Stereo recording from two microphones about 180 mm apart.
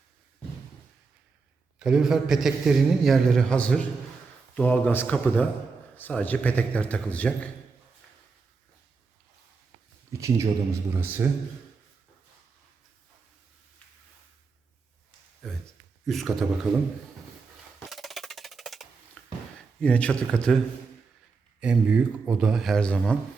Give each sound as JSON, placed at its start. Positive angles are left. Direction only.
{"t": 1.8, "sound": "a man's voice", "side_deg": -5}
{"t": 10.1, "sound": "speech", "side_deg": -15}
{"t": 15.4, "sound": "a man's voice", "side_deg": 0}
{"t": 17.8, "sound": "percussion", "side_deg": 0}
{"t": 19.8, "sound": "speech", "side_deg": 5}
{"t": 21.6, "sound": "a man's voice", "side_deg": -5}